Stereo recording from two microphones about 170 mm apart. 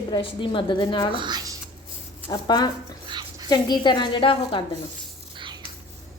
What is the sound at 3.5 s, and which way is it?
A woman's voice, 25° left (ahead or behind).